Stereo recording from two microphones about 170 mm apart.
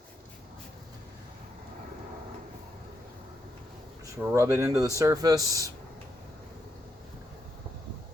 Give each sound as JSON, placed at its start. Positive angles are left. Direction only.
{"t": 4.2, "sound": "speech", "side_deg": -15}